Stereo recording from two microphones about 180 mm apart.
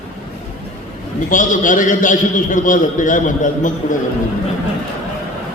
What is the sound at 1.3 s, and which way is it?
A man's voice, 45° left (ahead or behind).